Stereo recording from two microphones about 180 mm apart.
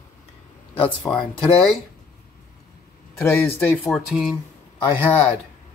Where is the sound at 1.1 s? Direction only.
10° left (ahead or behind).